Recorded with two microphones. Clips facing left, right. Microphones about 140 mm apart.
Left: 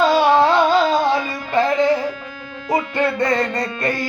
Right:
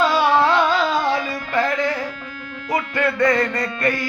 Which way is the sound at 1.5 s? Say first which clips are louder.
Left 5 dB; 25° left (ahead or behind).